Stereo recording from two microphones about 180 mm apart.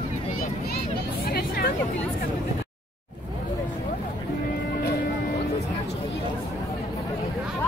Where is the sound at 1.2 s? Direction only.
55° left (ahead or behind).